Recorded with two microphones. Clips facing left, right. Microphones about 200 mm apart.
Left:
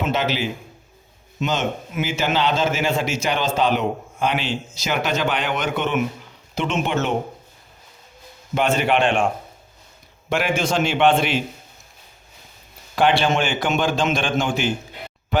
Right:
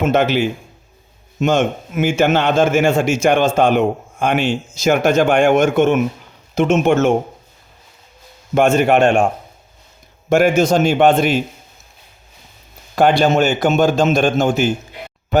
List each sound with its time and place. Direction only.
0.0 s a man's voice: 50° right (ahead or behind)
8.5 s a man's voice: 45° right (ahead or behind)
10.2 s a man's voice: 45° right (ahead or behind)
13.0 s a man's voice: 40° right (ahead or behind)